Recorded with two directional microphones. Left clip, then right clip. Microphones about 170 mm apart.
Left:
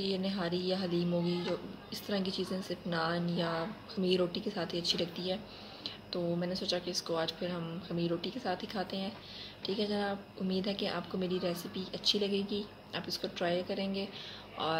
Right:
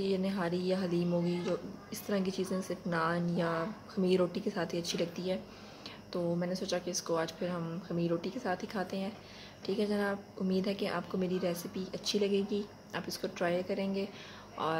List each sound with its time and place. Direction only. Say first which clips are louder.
0.0 s speech: right 2 dB; 30° right (ahead or behind)
6.4 s speech: even; 30° right (ahead or behind)